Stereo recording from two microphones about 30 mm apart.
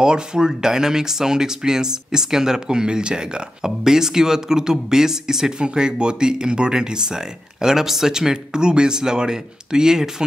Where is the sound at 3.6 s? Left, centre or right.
Centre.